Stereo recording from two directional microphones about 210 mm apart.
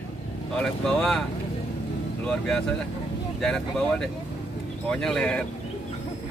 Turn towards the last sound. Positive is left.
turn(degrees=5)  # may be behind; listen again after turning